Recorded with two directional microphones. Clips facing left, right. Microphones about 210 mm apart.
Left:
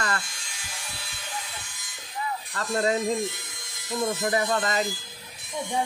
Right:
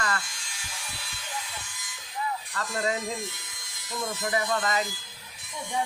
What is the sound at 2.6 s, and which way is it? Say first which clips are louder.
Speech: left 5 dB; 30° left (ahead or behind).